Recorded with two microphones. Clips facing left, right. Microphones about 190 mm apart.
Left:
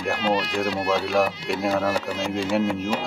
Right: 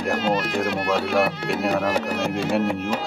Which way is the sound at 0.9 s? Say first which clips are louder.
Right 1 dB; centre (ahead or behind).